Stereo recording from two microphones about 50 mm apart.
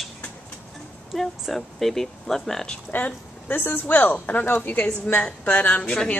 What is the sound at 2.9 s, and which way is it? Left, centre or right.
A woman's voice, left.